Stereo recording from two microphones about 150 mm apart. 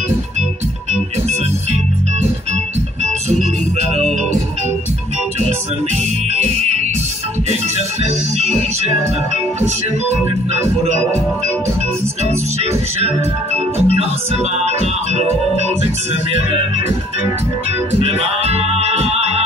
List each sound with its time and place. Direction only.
3.9 s music: 50° right (ahead or behind)
6.3 s music: 50° right (ahead or behind)
10.8 s music: 45° right (ahead or behind)
13.7 s music: 45° right (ahead or behind)
18.0 s music: 45° right (ahead or behind)